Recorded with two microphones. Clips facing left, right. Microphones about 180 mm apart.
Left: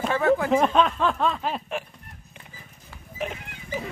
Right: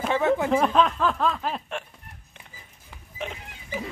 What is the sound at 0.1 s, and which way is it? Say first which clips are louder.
Speech: left 1 dB; 20° right (ahead or behind).